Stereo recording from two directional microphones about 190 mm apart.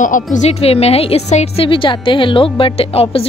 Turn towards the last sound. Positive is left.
turn(degrees=30)  # may be behind; listen again after turning